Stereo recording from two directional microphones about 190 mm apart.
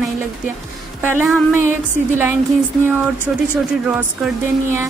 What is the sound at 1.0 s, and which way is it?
Speech, 10° right (ahead or behind).